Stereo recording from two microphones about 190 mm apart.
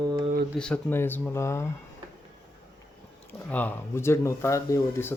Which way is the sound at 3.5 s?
10° left (ahead or behind).